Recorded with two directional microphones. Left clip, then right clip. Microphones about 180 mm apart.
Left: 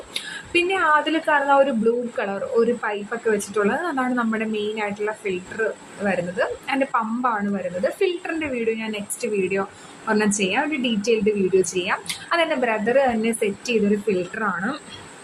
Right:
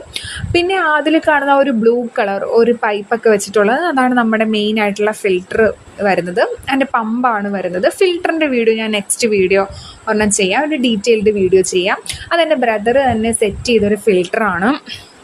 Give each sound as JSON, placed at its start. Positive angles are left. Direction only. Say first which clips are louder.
{"t": 0.1, "sound": "a woman's voice", "louder": "right 6 dB", "side_deg": -40}